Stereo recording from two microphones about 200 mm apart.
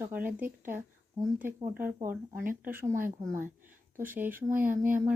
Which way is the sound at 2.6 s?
15° right (ahead or behind).